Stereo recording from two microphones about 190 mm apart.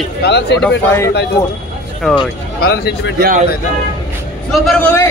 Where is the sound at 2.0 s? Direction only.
5° left (ahead or behind).